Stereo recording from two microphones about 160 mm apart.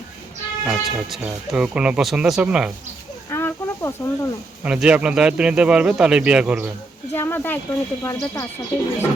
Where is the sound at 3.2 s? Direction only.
15° left (ahead or behind).